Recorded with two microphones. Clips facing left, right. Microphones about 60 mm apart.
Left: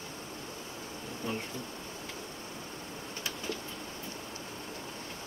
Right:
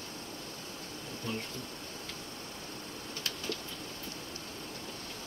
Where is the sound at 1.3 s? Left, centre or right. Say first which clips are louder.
Left 1 dB; left.